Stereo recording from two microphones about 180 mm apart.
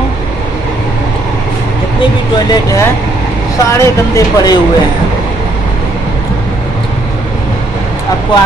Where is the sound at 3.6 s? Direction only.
20° left (ahead or behind).